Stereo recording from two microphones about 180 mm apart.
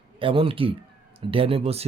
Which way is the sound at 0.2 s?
30° right (ahead or behind).